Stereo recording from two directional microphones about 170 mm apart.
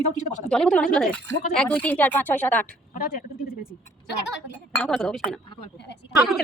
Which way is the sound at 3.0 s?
60° left (ahead or behind).